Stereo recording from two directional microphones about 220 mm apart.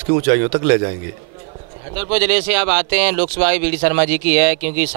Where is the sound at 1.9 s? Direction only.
10° right (ahead or behind).